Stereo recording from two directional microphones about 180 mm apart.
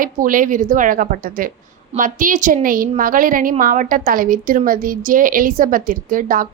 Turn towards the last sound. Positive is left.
turn(degrees=-50)  # may be behind; listen again after turning